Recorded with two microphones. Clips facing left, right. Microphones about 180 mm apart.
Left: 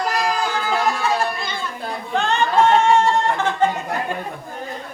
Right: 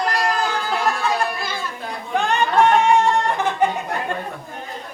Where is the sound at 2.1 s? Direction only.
15° right (ahead or behind).